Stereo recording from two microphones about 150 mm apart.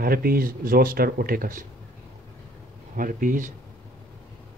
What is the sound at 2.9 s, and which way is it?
Speech, 65° right (ahead or behind).